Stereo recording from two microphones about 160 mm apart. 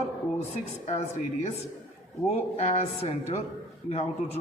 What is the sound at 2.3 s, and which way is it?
Speech, 45° left (ahead or behind).